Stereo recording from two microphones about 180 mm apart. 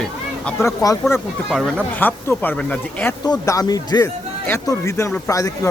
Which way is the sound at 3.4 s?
20° left (ahead or behind).